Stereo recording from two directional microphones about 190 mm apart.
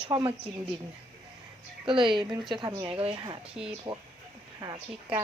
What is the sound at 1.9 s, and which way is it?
Speech, 25° right (ahead or behind).